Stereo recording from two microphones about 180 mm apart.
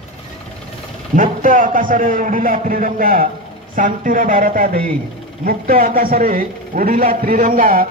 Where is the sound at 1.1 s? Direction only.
50° right (ahead or behind).